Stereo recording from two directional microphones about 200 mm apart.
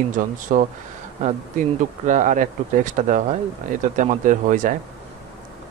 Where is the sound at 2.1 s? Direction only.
40° right (ahead or behind).